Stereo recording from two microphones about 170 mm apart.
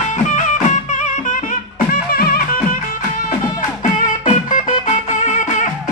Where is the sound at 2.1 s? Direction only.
60° left (ahead or behind).